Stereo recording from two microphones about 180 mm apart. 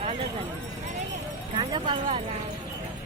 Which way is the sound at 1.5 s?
25° right (ahead or behind).